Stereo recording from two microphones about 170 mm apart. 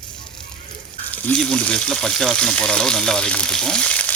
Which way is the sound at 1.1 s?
10° left (ahead or behind).